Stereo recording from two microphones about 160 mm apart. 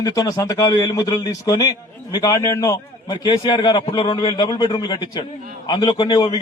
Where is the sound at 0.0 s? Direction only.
25° left (ahead or behind).